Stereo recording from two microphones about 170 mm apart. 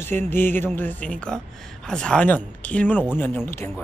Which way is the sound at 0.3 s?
10° left (ahead or behind).